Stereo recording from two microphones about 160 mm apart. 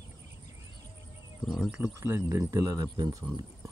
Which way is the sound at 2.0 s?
15° right (ahead or behind).